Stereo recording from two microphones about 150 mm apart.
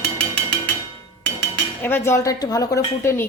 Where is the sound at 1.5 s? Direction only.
15° left (ahead or behind).